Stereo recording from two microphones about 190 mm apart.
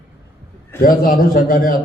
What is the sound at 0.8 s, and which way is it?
Speech, 50° left (ahead or behind).